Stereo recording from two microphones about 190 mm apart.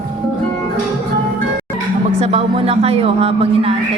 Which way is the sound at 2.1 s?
30° right (ahead or behind).